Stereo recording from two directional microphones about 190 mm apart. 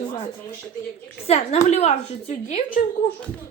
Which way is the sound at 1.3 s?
35° left (ahead or behind).